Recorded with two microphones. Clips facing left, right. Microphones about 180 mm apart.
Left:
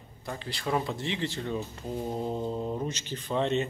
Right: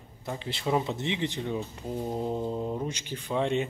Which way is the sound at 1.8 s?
Centre (ahead or behind).